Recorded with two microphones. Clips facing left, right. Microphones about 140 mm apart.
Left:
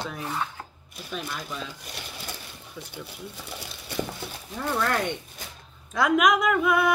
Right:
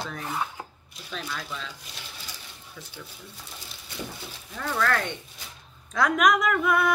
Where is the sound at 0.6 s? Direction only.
15° right (ahead or behind).